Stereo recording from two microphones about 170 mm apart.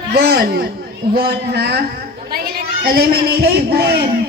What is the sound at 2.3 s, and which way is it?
A man's voice, 60° right (ahead or behind).